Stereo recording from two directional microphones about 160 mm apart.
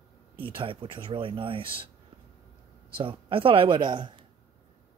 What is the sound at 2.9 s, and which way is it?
Speech, 35° right (ahead or behind).